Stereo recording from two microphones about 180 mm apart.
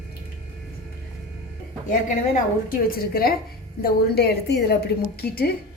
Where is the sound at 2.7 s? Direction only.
55° left (ahead or behind).